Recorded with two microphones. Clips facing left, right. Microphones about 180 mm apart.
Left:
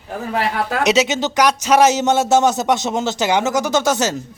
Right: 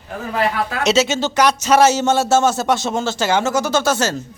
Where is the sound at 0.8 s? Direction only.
15° left (ahead or behind).